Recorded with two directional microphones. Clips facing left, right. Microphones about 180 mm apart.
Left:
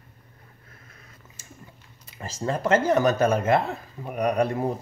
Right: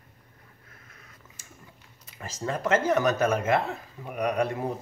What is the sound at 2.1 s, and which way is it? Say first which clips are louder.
Speech: left 3 dB; 30° left (ahead or behind).